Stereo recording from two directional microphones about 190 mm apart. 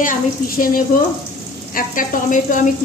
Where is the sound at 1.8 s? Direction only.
45° left (ahead or behind).